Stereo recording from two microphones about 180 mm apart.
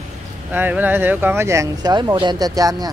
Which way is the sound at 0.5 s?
10° right (ahead or behind).